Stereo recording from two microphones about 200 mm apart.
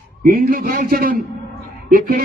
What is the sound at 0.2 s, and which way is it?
A man's voice, 45° right (ahead or behind).